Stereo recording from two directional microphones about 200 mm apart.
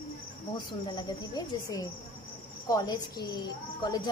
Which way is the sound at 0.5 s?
20° left (ahead or behind).